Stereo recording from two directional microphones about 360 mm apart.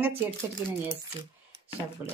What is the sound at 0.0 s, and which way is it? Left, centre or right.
Speech, centre.